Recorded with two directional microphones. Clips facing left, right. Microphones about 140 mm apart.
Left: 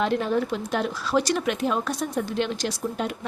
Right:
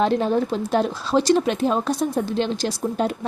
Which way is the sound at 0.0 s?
30° right (ahead or behind).